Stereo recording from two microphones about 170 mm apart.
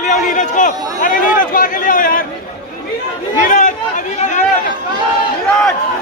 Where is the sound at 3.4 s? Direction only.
50° left (ahead or behind).